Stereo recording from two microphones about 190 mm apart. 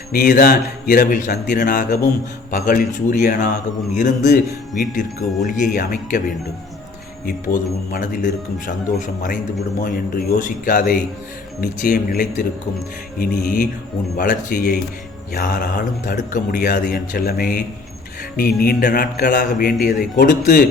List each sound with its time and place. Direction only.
0.1 s a man's voice: 45° left (ahead or behind)
7.3 s speech: 45° left (ahead or behind)